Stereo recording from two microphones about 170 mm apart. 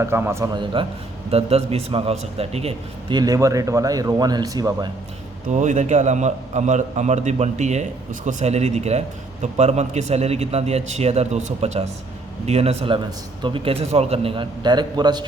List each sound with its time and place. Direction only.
0.0 s a man's voice: 15° right (ahead or behind); by 3.2 s 35° right (ahead or behind)
3.2 s speech: 20° right (ahead or behind)
5.5 s a man's voice: 45° right (ahead or behind); by 15.3 s 25° right (ahead or behind)